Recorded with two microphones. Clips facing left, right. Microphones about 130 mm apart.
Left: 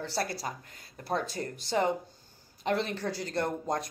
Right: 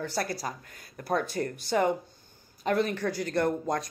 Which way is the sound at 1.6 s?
25° left (ahead or behind).